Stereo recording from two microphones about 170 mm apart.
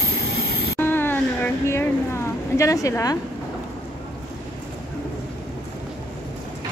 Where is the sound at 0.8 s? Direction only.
10° left (ahead or behind).